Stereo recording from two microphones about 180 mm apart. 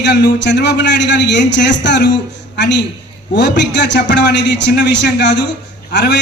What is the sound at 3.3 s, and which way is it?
A man's voice, 75° left (ahead or behind).